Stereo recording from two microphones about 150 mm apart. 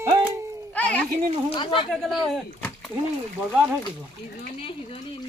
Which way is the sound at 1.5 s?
35° left (ahead or behind).